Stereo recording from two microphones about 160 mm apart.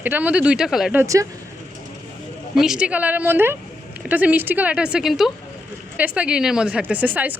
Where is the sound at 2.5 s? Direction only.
5° right (ahead or behind).